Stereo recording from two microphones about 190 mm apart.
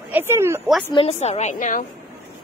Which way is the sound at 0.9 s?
30° left (ahead or behind).